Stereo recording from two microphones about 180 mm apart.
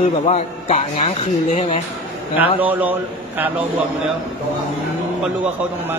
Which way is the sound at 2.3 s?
10° right (ahead or behind).